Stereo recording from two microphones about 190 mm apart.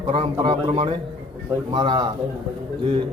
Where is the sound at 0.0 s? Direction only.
30° right (ahead or behind).